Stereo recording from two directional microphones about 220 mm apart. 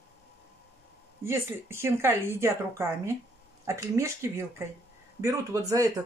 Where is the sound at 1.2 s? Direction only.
10° right (ahead or behind).